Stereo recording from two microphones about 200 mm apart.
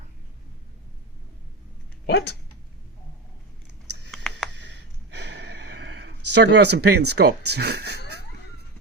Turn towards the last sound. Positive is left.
turn(degrees=-55)  # may be behind; listen again after turning